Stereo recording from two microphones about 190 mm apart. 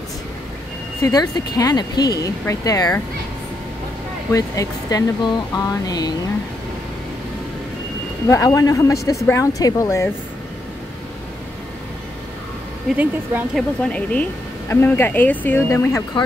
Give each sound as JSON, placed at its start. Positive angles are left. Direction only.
{"t": 1.0, "sound": "speech", "side_deg": 20}
{"t": 4.3, "sound": "speech", "side_deg": 20}
{"t": 8.3, "sound": "speech", "side_deg": 20}
{"t": 12.9, "sound": "speech", "side_deg": -10}
{"t": 13.7, "sound": "speech", "side_deg": 5}